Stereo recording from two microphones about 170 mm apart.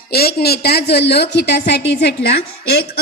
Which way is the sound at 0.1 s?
65° left (ahead or behind).